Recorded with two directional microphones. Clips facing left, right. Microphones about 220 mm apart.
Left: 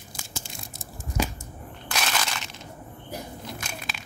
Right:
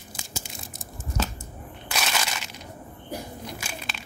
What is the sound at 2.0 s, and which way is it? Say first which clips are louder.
Crushing: even; 5° right (ahead or behind).